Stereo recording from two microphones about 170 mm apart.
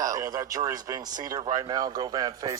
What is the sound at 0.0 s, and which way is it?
Speech, 20° right (ahead or behind).